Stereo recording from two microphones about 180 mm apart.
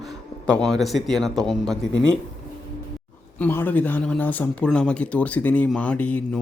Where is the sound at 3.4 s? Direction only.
10° left (ahead or behind).